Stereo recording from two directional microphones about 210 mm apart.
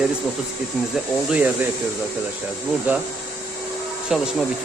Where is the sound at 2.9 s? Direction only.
10° right (ahead or behind).